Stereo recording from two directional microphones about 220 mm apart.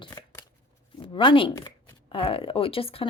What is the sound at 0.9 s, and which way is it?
Speech, 20° left (ahead or behind).